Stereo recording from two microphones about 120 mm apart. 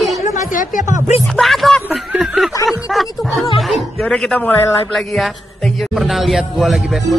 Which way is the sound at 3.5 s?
Centre (ahead or behind).